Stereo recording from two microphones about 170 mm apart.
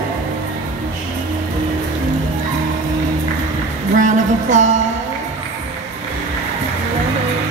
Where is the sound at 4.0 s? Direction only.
45° right (ahead or behind).